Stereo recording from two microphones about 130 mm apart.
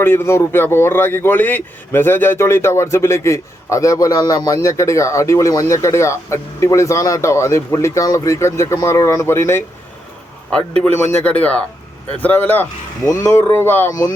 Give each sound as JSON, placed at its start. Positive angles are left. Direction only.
{"t": 0.0, "sound": "speech", "side_deg": 20}
{"t": 10.5, "sound": "speech", "side_deg": 10}